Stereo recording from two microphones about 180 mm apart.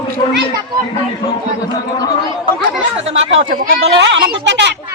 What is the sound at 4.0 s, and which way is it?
Speech, 85° right.